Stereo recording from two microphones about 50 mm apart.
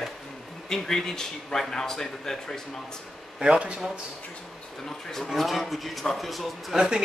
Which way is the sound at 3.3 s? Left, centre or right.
Centre.